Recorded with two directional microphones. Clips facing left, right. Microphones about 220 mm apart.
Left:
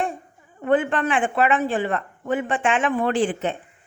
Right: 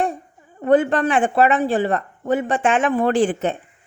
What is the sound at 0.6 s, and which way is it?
Speech, 40° right (ahead or behind).